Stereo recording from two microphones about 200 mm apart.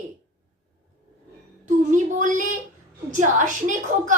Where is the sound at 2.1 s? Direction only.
40° right (ahead or behind).